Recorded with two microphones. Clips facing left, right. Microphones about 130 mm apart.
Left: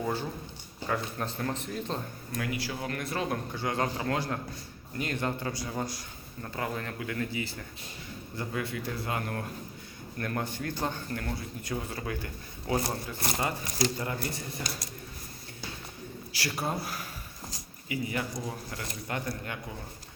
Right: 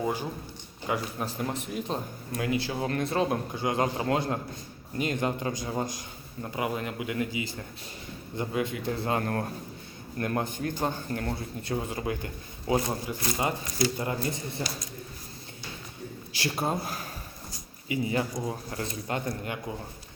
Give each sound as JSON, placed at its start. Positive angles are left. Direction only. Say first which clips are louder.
{"t": 0.0, "sound": "a man's voice", "louder": "right 2 dB", "side_deg": -15}
{"t": 8.9, "sound": "speech", "louder": "right 5 dB", "side_deg": -30}
{"t": 10.2, "sound": "speech", "louder": "right 4 dB", "side_deg": -25}
{"t": 11.1, "sound": "a man's voice", "louder": "right 3 dB", "side_deg": -30}
{"t": 16.3, "sound": "a man's voice", "louder": "right 3 dB", "side_deg": -25}